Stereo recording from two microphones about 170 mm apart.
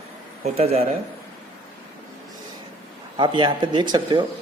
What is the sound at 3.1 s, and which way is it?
Speech, 30° right (ahead or behind).